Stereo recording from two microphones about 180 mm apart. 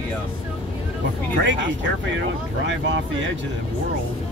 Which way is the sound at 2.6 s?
90° right.